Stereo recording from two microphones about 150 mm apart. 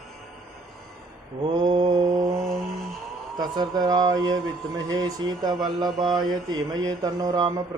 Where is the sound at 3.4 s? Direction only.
25° right (ahead or behind).